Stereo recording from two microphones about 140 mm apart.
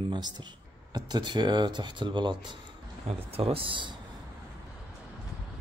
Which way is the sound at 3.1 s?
45° right (ahead or behind).